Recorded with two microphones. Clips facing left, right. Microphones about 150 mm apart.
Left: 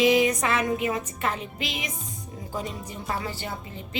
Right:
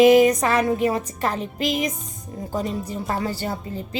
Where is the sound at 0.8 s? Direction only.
35° right (ahead or behind).